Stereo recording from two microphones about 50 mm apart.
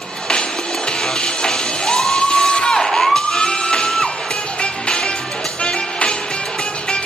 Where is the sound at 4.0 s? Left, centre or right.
Centre.